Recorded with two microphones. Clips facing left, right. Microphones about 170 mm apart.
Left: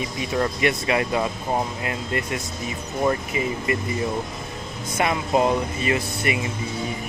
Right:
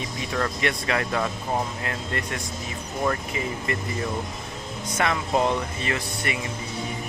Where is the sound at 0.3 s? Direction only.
15° left (ahead or behind).